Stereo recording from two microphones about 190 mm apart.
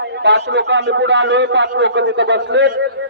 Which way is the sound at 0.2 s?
65° right (ahead or behind).